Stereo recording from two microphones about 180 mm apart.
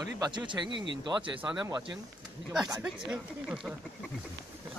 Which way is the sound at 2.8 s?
5° right (ahead or behind).